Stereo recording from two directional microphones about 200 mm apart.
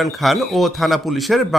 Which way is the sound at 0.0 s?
Centre (ahead or behind).